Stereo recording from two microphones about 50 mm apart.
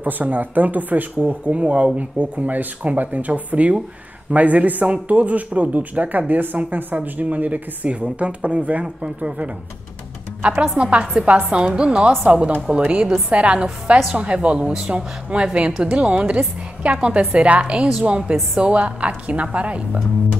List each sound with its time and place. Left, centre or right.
0.0 s a man's voice: right
10.8 s speech: right